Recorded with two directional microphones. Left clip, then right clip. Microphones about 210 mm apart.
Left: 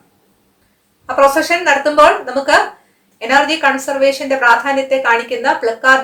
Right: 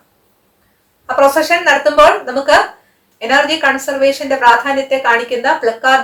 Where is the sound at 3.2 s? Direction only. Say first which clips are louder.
Even; 20° left (ahead or behind).